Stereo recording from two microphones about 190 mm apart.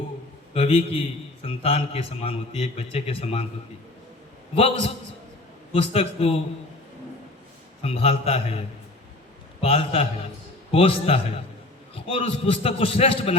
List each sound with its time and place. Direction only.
0.5 s a man's voice: 30° left (ahead or behind)
4.5 s a man's voice: 30° left (ahead or behind)
7.8 s a man's voice: 30° left (ahead or behind)